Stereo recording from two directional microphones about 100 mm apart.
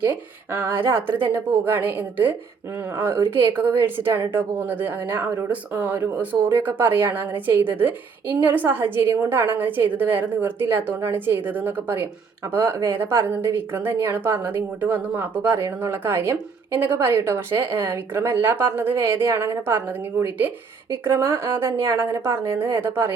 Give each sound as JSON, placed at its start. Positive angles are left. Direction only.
{"t": 0.0, "sound": "a woman's voice", "side_deg": -20}